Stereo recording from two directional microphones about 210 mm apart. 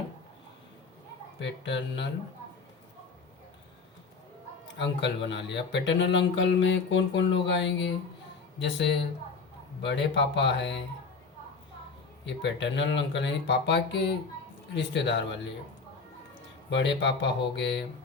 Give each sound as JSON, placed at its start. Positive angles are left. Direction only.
{"t": 1.4, "sound": "speech", "side_deg": 60}
{"t": 4.7, "sound": "speech", "side_deg": 55}
{"t": 12.2, "sound": "speech", "side_deg": 55}
{"t": 16.6, "sound": "speech", "side_deg": 55}